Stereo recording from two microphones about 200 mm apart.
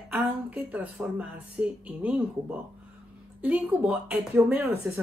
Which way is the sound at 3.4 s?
10° right (ahead or behind).